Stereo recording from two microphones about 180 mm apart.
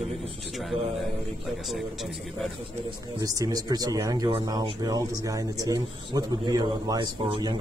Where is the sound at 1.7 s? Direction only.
Centre (ahead or behind).